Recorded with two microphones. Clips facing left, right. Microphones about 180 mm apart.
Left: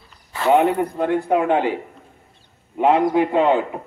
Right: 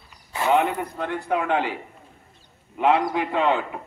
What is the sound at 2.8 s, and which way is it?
Speech, 45° left (ahead or behind).